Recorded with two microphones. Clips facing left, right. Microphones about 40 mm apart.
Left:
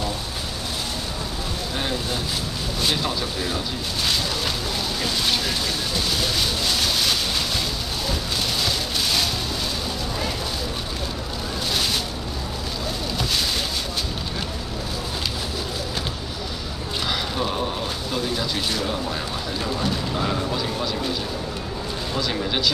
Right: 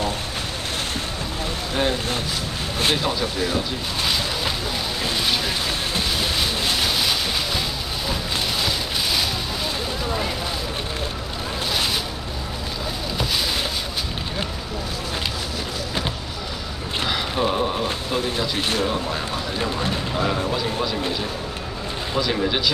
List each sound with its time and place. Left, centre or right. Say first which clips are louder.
3.0 s speech: right 3 dB; centre
6.1 s vehicle: right 1 dB; centre
8.1 s a sound: right 1 dB; centre
17.1 s mechanisms: right 4 dB; centre
17.8 s a sound: right 2 dB; right
18.6 s speech: right 3 dB; right
19.6 s speech: even; right
20.2 s speech: right 4 dB; centre
22.1 s speech: right 3 dB; centre